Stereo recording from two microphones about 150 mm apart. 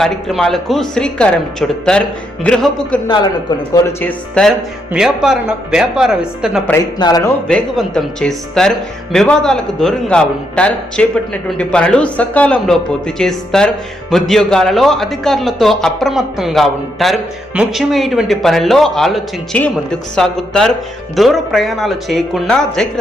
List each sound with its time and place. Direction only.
0.0 s a man's voice: centre (ahead or behind)
4.0 s a man's voice: 5° left (ahead or behind)
7.0 s speech: 25° left (ahead or behind)
7.4 s a man's voice: 5° left (ahead or behind)